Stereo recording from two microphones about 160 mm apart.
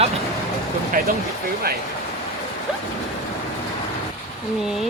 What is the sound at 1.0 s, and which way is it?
Speech, 60° right (ahead or behind).